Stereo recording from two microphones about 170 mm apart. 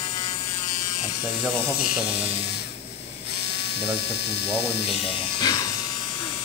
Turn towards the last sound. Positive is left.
turn(degrees=25)  # may be behind; listen again after turning